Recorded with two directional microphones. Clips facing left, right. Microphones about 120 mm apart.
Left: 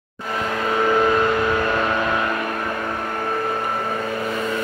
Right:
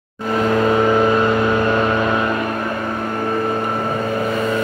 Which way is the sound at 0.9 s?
15° right (ahead or behind).